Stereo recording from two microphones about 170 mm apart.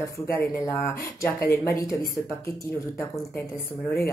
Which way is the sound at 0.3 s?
15° left (ahead or behind).